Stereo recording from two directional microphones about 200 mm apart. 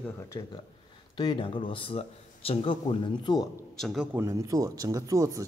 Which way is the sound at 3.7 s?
Centre (ahead or behind).